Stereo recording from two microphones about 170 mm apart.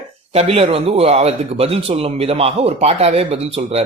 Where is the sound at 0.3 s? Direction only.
35° right (ahead or behind).